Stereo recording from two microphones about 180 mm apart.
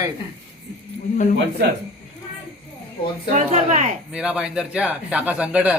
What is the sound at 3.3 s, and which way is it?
Speech, 45° right (ahead or behind).